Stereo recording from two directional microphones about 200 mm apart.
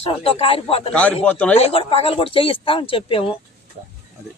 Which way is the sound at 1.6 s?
30° left (ahead or behind).